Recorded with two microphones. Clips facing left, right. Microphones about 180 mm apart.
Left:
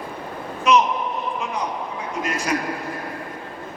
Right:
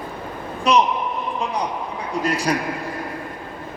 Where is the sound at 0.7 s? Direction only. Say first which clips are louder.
Even; 35° right (ahead or behind).